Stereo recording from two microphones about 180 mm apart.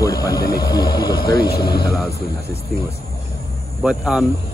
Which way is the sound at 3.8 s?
5° right (ahead or behind).